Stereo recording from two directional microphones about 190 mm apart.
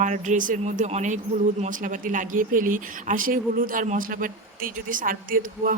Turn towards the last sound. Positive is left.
turn(degrees=-45)  # may be behind; listen again after turning